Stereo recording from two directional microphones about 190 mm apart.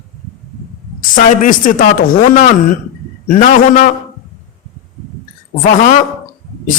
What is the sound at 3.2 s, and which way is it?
Speech, 45° left (ahead or behind).